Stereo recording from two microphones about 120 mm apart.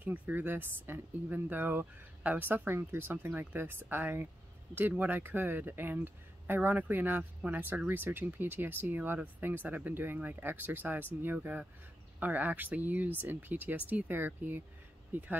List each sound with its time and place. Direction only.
0.0 s speech: 15° right (ahead or behind)